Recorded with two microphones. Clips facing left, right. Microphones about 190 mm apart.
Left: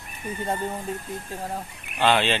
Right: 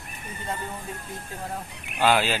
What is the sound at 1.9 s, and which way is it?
Speech, 5° right (ahead or behind).